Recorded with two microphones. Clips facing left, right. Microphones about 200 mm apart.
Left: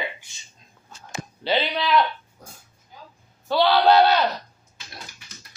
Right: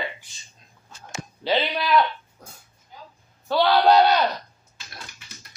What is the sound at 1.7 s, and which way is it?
Speech, 5° right (ahead or behind).